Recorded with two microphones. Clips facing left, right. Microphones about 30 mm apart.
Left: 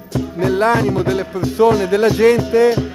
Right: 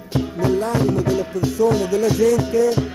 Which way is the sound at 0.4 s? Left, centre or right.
Left.